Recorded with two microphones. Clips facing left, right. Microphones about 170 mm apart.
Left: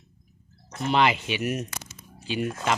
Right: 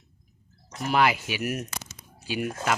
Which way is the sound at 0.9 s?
5° right (ahead or behind).